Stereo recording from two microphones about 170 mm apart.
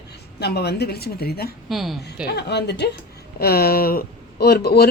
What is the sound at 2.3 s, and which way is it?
Speech, 80° left.